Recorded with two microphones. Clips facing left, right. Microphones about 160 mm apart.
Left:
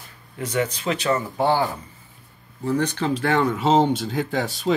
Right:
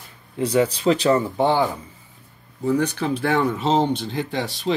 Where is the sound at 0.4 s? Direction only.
30° right (ahead or behind).